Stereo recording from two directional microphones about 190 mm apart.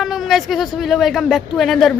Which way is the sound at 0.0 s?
Centre (ahead or behind).